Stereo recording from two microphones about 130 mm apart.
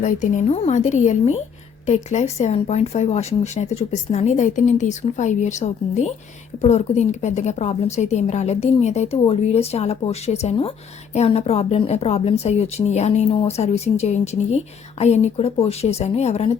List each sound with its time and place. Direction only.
0.0 s a woman's voice: 80° left; by 16.6 s 55° left (ahead or behind)